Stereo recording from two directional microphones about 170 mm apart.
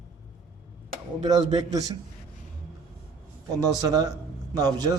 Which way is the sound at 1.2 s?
20° right (ahead or behind).